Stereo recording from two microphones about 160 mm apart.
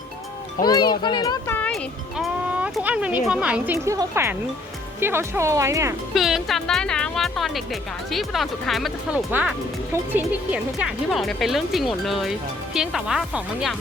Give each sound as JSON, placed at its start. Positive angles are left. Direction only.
{"t": 0.6, "sound": "a child's voice", "side_deg": 25}
{"t": 1.5, "sound": "music", "side_deg": 10}
{"t": 2.1, "sound": "a sound", "side_deg": -5}
{"t": 3.2, "sound": "speech", "side_deg": -5}
{"t": 3.8, "sound": "speech", "side_deg": -20}
{"t": 6.1, "sound": "speech", "side_deg": 0}